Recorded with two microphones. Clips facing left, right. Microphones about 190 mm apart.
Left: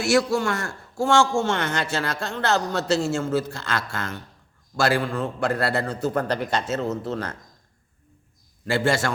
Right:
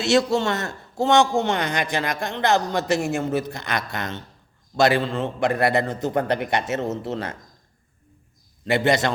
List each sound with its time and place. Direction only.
0.0 s a man's voice: 20° right (ahead or behind)
8.6 s a man's voice: 20° right (ahead or behind)